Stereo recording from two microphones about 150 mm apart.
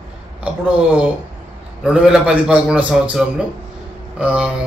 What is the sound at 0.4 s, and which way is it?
A man's voice, 10° right (ahead or behind).